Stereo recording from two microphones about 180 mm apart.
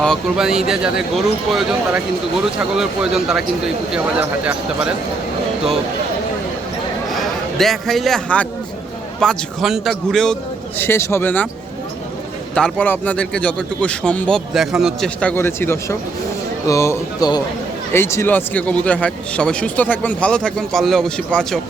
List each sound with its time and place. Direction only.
0.0 s speech: centre (ahead or behind)
7.1 s a man's voice: centre (ahead or behind)
10.8 s speech: 15° left (ahead or behind)
12.5 s speech: 5° left (ahead or behind)